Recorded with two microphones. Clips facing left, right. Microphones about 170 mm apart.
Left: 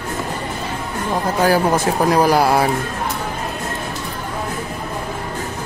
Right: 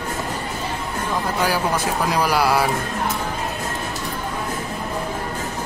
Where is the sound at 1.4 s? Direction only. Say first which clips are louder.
Left 8 dB; 45° left (ahead or behind).